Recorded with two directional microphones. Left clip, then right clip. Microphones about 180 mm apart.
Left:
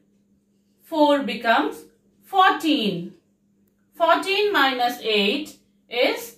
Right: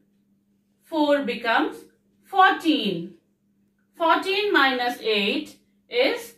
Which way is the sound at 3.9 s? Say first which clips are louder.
Left 2 dB; 10° right (ahead or behind).